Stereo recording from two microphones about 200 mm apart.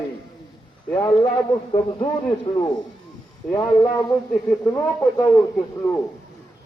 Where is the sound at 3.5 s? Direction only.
15° left (ahead or behind).